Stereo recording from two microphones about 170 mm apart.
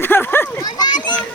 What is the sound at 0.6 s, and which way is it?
Children playing, 25° left (ahead or behind).